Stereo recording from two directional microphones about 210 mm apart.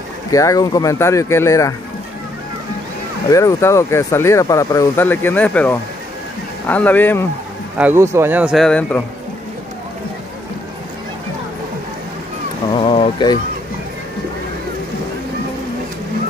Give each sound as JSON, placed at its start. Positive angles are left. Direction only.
{"t": 0.3, "sound": "speech", "side_deg": 15}
{"t": 3.3, "sound": "speech", "side_deg": 15}
{"t": 7.7, "sound": "a man's voice", "side_deg": -10}
{"t": 12.7, "sound": "a sound", "side_deg": 25}